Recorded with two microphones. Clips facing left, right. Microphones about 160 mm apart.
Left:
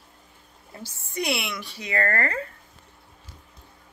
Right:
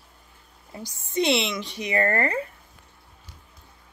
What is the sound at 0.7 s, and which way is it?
Speech, 15° right (ahead or behind).